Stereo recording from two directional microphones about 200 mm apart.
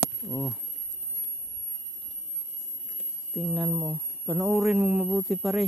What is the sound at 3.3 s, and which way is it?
Speech, 5° right (ahead or behind).